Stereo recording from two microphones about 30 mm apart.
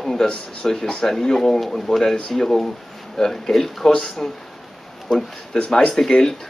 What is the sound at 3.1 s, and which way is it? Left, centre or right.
Speech, left.